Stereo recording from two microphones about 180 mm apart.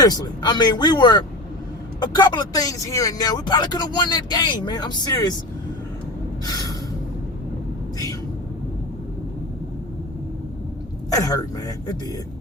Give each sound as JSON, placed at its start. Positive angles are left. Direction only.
{"t": 0.0, "sound": "speech", "side_deg": 20}
{"t": 6.4, "sound": "a sound", "side_deg": 20}
{"t": 11.1, "sound": "speech", "side_deg": 20}